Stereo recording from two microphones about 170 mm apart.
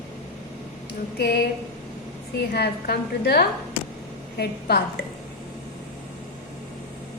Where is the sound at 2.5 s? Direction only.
70° left (ahead or behind).